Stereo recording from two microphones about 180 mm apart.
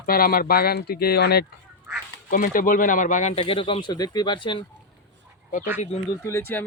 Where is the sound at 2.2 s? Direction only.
50° left (ahead or behind); by 4.6 s 25° left (ahead or behind).